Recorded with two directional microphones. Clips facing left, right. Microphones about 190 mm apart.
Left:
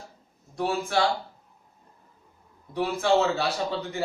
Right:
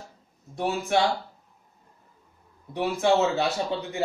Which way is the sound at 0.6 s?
20° right (ahead or behind).